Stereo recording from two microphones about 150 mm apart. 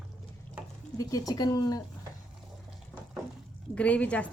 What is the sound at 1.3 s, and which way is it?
Speech, 25° left (ahead or behind).